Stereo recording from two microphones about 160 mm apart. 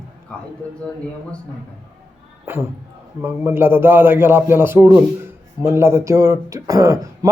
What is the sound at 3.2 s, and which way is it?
A man's voice, 15° right (ahead or behind).